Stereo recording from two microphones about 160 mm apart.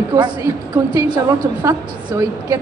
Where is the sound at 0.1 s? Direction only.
25° right (ahead or behind).